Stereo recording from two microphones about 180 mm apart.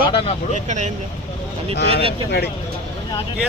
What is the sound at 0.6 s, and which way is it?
Speech, 40° right (ahead or behind).